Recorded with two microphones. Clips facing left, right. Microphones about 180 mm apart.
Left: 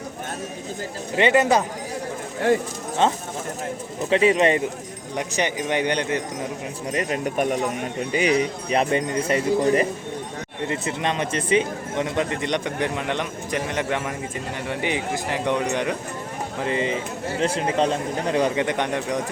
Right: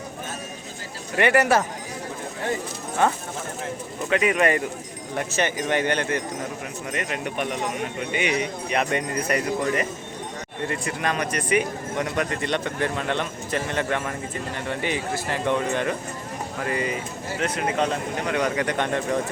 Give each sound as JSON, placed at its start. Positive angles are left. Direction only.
{"t": 1.1, "sound": "a man's voice", "side_deg": 20}
{"t": 3.0, "sound": "a man's voice", "side_deg": 20}
{"t": 6.9, "sound": "speech", "side_deg": 35}
{"t": 10.7, "sound": "a man's voice", "side_deg": 20}